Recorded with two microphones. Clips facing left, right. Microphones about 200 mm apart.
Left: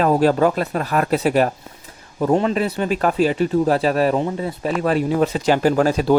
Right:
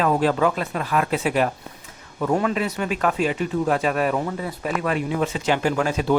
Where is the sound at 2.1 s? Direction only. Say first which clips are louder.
Left 4 dB; 30° left (ahead or behind).